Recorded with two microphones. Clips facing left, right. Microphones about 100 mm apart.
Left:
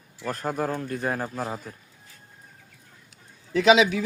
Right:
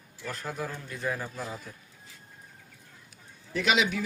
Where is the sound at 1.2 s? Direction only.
40° left (ahead or behind).